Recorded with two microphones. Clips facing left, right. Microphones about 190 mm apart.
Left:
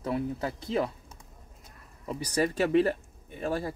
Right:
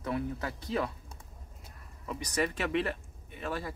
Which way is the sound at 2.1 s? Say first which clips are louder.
Left 4 dB; 35° left (ahead or behind).